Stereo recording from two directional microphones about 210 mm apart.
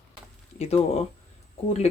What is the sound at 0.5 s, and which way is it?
Speech, 30° left (ahead or behind).